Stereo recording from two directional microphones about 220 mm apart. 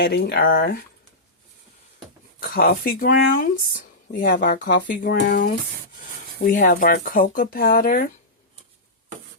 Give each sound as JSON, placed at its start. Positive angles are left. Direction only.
{"t": 0.0, "sound": "speech", "side_deg": 45}
{"t": 2.4, "sound": "speech", "side_deg": 45}